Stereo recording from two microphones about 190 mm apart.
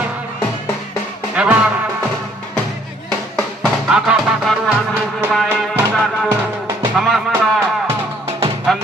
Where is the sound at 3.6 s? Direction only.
5° right (ahead or behind).